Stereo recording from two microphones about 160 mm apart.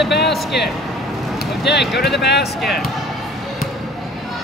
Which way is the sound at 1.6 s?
90° left.